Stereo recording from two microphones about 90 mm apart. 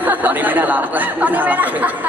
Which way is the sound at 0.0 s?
20° right (ahead or behind).